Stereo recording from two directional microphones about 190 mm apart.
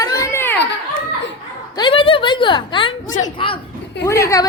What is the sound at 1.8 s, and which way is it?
A woman's voice, 25° left (ahead or behind).